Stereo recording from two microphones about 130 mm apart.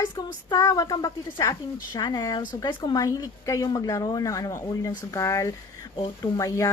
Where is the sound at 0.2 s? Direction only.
30° left (ahead or behind).